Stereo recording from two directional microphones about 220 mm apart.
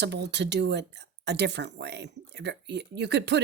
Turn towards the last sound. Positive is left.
turn(degrees=-50)  # may be behind; listen again after turning